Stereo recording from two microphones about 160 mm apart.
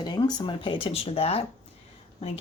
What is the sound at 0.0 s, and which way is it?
Speech, 25° left (ahead or behind).